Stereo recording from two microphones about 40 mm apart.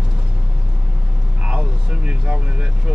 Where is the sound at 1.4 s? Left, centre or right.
Right.